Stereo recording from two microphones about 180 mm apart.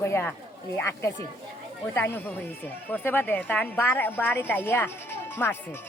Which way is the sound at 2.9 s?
10° left (ahead or behind).